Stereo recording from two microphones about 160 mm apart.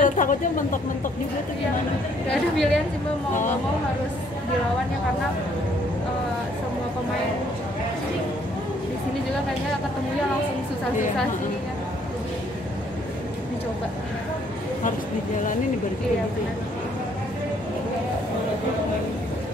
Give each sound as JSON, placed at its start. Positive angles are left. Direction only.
{"t": 0.0, "sound": "speech", "side_deg": 55}
{"t": 2.5, "sound": "a woman's voice", "side_deg": 5}